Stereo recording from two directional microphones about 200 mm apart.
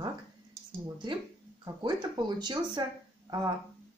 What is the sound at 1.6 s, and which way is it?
Speech, 20° right (ahead or behind).